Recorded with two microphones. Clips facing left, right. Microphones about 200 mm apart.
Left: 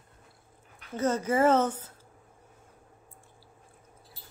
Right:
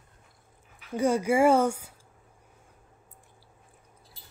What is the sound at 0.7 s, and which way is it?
Speech, 10° right (ahead or behind).